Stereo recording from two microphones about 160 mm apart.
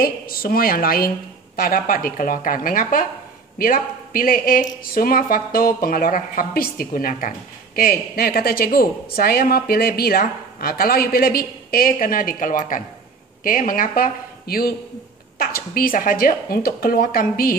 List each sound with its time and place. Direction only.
0.0 s speech: 65° left (ahead or behind)